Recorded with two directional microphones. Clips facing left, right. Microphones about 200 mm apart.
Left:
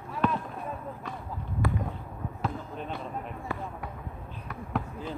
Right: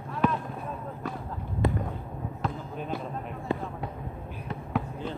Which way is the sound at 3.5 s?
20° right (ahead or behind).